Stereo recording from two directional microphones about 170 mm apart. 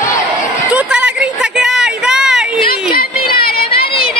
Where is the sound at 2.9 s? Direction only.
60° left (ahead or behind).